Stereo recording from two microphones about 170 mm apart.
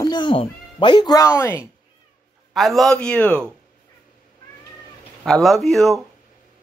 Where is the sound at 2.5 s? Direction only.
Centre (ahead or behind).